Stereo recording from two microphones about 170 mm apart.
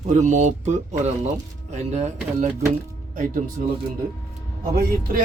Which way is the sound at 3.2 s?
50° right (ahead or behind).